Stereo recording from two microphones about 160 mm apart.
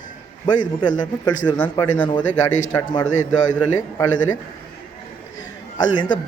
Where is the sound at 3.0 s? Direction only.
50° left (ahead or behind).